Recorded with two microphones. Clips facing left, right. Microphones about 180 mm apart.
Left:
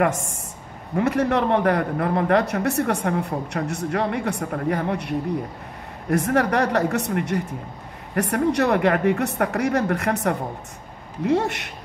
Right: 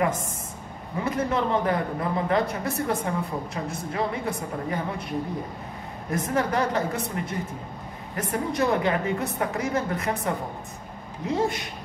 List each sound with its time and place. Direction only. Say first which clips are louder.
0.9 s a man's voice: left 5 dB; 70° left (ahead or behind)